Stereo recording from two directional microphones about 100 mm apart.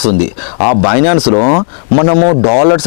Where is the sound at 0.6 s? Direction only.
15° left (ahead or behind).